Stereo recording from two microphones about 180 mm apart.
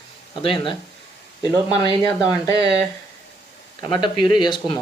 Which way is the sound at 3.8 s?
25° left (ahead or behind).